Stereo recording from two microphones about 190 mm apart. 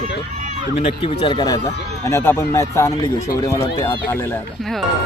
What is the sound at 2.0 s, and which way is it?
Speech, 15° left (ahead or behind).